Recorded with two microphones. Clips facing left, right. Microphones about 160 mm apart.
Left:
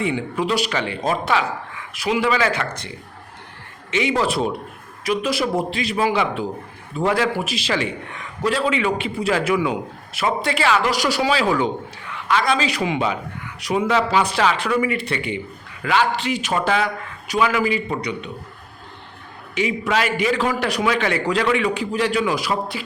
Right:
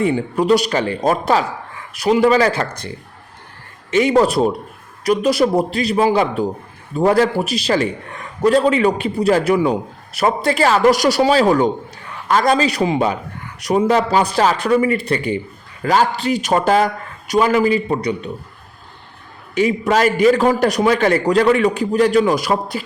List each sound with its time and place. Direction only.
0.0 s a man's voice: 45° right (ahead or behind)
3.9 s a man's voice: 45° right (ahead or behind)
19.5 s a man's voice: 45° right (ahead or behind)